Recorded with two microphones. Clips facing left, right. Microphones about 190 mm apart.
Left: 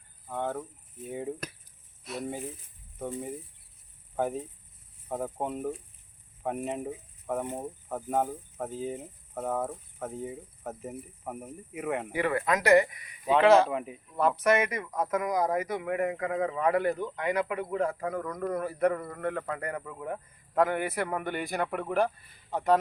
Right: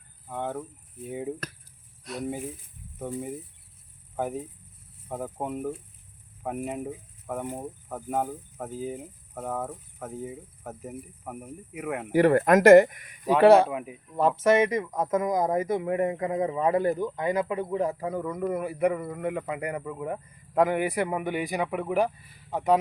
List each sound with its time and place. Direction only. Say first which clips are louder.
0.3 s speech: even; 5° right (ahead or behind)
12.2 s speech: right 10 dB; 45° right (ahead or behind)
13.7 s speech: even; 5° right (ahead or behind)
14.2 s speech: right 4 dB; 25° right (ahead or behind); by 22.8 s 5° right (ahead or behind)